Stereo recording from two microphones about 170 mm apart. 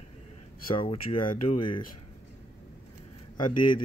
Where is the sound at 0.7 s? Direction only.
30° left (ahead or behind).